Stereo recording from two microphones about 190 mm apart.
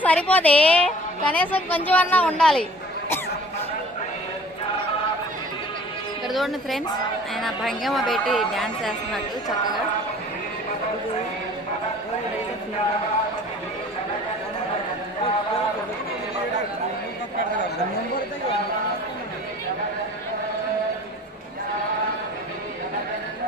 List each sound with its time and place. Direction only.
0.0 s a woman's voice: 10° left (ahead or behind)
6.2 s a woman's voice: centre (ahead or behind)